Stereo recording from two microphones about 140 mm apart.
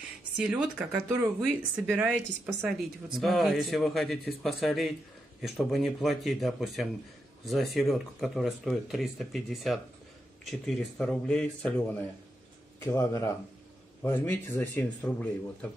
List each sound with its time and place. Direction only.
0.4 s speech: 5° right (ahead or behind)
2.6 s speech: centre (ahead or behind)
12.8 s speech: 20° left (ahead or behind)